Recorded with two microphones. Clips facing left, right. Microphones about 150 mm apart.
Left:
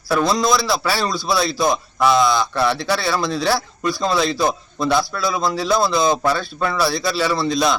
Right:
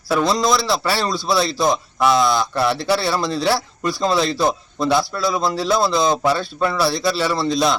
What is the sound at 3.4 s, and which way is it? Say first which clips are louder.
Speech: even; centre (ahead or behind).